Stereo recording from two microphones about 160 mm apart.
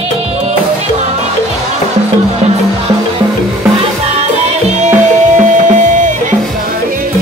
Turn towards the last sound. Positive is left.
turn(degrees=-50)  # may be behind; listen again after turning